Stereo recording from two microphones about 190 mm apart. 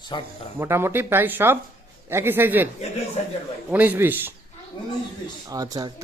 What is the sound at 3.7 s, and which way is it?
Speech, 10° right (ahead or behind).